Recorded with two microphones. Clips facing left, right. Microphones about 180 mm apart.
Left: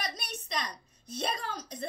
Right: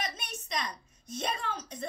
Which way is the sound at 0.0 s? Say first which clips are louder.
Even; 35° left (ahead or behind).